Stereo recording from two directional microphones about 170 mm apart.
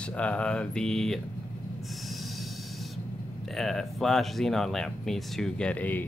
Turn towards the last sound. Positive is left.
turn(degrees=10)  # may be behind; listen again after turning